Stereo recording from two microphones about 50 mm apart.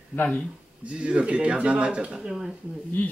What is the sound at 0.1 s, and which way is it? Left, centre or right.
Speech, left.